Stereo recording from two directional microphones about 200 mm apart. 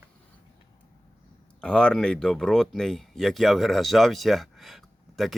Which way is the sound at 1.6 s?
5° left (ahead or behind).